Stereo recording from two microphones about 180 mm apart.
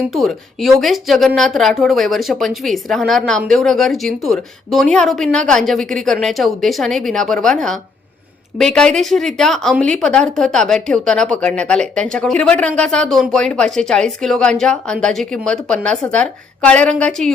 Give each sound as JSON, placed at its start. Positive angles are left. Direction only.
{"t": 0.1, "sound": "speech", "side_deg": 0}